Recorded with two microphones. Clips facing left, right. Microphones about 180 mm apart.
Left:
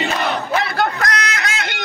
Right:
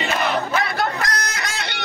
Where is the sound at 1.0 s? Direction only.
65° left (ahead or behind).